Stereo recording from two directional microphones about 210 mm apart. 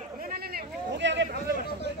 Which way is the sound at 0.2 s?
45° right (ahead or behind).